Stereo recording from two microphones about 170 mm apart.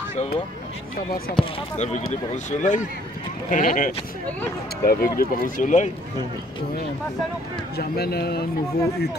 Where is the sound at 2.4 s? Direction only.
45° left (ahead or behind).